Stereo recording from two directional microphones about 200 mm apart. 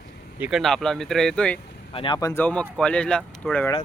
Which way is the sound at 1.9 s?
25° left (ahead or behind).